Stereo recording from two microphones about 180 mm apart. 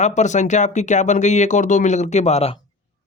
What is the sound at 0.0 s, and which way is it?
Speech, 40° left (ahead or behind).